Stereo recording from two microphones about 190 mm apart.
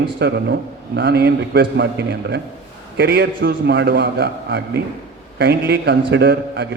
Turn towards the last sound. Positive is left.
turn(degrees=-65)  # may be behind; listen again after turning